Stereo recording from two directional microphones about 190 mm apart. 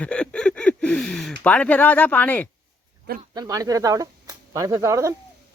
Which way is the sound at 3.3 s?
20° right (ahead or behind).